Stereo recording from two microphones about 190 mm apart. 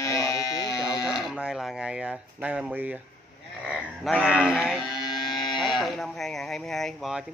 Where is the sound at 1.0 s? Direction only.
Centre (ahead or behind).